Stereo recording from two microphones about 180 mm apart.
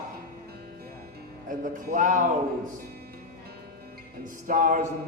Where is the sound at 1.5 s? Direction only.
50° right (ahead or behind).